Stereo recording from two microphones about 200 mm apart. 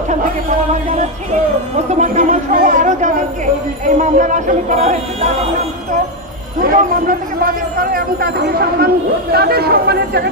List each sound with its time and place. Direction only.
1.9 s speech: 35° right (ahead or behind)
6.6 s speech: 45° right (ahead or behind)